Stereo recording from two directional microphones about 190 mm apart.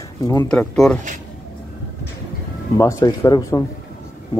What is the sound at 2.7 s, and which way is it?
Speech, 15° left (ahead or behind).